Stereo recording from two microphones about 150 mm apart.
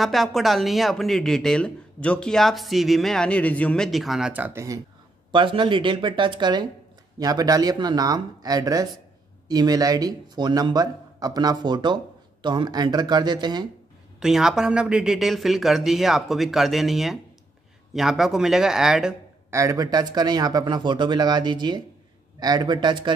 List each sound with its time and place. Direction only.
0.0 s speech: centre (ahead or behind); by 4.7 s 15° right (ahead or behind)
5.3 s a man's voice: 35° right (ahead or behind)
14.2 s speech: 5° right (ahead or behind)
19.5 s a man's voice: 20° right (ahead or behind)